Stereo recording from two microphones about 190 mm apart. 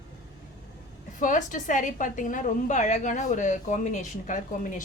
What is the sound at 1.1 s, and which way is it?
A woman's voice, 45° left (ahead or behind).